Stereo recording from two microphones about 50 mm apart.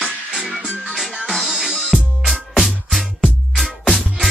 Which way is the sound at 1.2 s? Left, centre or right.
Centre.